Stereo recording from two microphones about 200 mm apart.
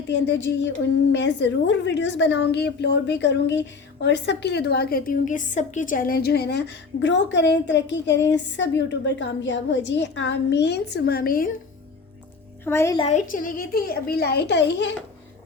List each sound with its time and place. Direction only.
0.1 s a woman's voice: 60° left (ahead or behind); by 11.5 s 45° left (ahead or behind)
12.6 s a woman's voice: 15° left (ahead or behind)
13.0 s a child's voice: 35° left (ahead or behind); by 14.9 s 60° left (ahead or behind)